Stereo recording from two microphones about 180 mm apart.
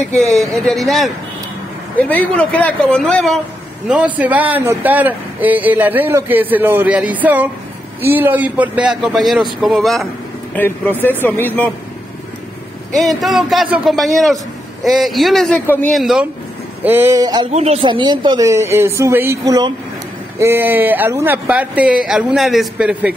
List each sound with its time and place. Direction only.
0.2 s a man's voice: centre (ahead or behind)
3.8 s a man's voice: 5° right (ahead or behind); by 11.7 s 10° left (ahead or behind)
12.9 s a man's voice: centre (ahead or behind)
15.9 s a man's voice: centre (ahead or behind)
16.8 s a man's voice: 10° right (ahead or behind)
17.5 s a man's voice: 35° right (ahead or behind); by 23.1 s 5° right (ahead or behind)